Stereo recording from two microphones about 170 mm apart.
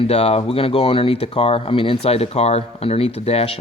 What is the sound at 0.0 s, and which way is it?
Speech, 35° left (ahead or behind).